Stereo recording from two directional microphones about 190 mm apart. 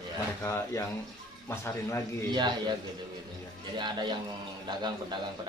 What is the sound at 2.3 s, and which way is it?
Speech, 25° right (ahead or behind).